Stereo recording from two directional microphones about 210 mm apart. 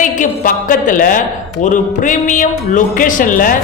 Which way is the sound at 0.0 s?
40° left (ahead or behind).